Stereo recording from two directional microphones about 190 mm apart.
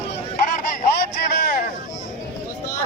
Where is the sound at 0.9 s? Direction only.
55° left (ahead or behind).